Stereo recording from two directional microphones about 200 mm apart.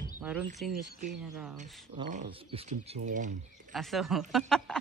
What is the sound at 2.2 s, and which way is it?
Speech, 30° right (ahead or behind).